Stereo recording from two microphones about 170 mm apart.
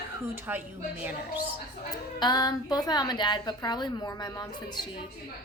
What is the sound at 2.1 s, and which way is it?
A woman's voice, 25° left (ahead or behind).